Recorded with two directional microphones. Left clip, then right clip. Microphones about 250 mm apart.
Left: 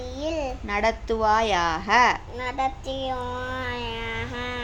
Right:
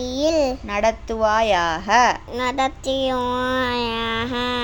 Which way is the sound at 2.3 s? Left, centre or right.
Right.